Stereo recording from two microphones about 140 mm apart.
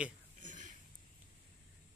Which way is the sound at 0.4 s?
65° right (ahead or behind).